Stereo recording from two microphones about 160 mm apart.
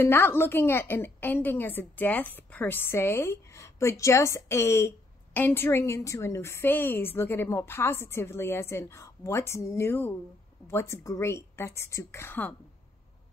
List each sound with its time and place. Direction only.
0.0 s a woman's voice: 15° left (ahead or behind)